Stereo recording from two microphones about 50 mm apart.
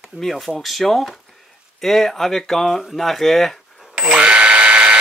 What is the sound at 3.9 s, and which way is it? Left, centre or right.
Alarm, centre.